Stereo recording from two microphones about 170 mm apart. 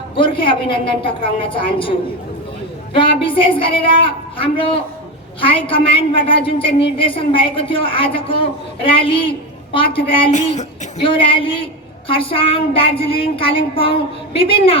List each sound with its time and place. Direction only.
0.2 s a woman's voice: 30° left (ahead or behind)
10.3 s a woman's voice: 40° left (ahead or behind)